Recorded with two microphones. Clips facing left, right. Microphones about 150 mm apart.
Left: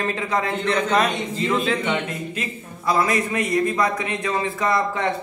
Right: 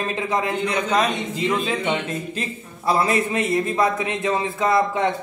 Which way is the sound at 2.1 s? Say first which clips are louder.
Right 1 dB; 30° right (ahead or behind).